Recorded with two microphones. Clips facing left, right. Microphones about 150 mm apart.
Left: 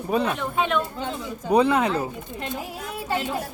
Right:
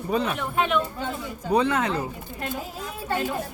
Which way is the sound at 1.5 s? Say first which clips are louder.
Left 3 dB; 15° left (ahead or behind).